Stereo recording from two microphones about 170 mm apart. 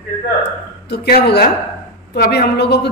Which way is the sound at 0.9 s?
70° left (ahead or behind).